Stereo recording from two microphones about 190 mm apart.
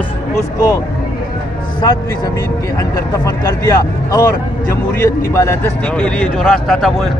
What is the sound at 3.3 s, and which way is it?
Speech, 15° left (ahead or behind).